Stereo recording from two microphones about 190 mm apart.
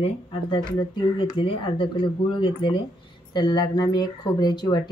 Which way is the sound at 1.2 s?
25° left (ahead or behind).